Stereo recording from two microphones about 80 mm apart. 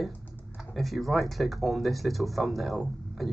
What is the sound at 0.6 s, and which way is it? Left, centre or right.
Speech, centre.